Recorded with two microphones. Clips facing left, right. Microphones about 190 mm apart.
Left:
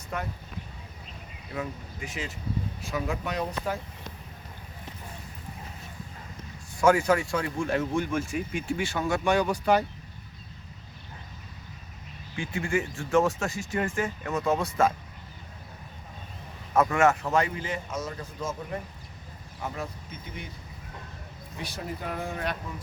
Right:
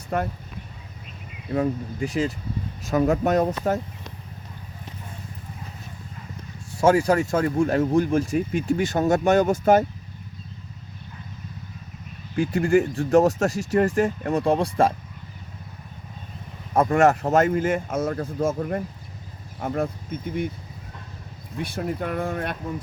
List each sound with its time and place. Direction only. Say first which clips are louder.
0.1 s speech: right 8 dB; 45° right (ahead or behind)
1.5 s speech: right 11 dB; 40° right (ahead or behind)
6.8 s speech: right 4 dB; 35° right (ahead or behind)
12.4 s speech: right 10 dB; 40° right (ahead or behind)
16.9 s speech: right 8 dB; 40° right (ahead or behind)
21.6 s speech: right 8 dB; 55° right (ahead or behind)